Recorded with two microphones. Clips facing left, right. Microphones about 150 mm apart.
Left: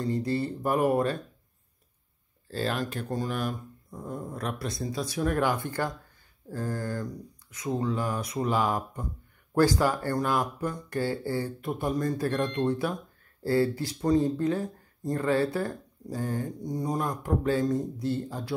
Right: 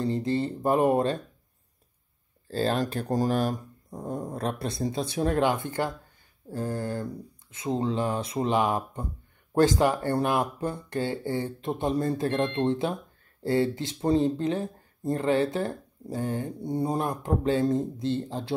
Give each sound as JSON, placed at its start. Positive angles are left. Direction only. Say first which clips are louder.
{"t": 0.0, "sound": "speech", "louder": "right 2 dB", "side_deg": -25}
{"t": 2.5, "sound": "speech", "louder": "right 4 dB", "side_deg": -30}